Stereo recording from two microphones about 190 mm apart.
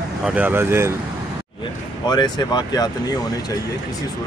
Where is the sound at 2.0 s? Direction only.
20° left (ahead or behind).